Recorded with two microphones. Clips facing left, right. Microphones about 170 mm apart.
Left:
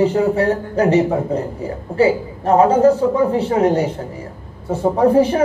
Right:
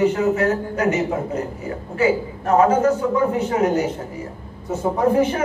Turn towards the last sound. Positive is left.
turn(degrees=30)  # may be behind; listen again after turning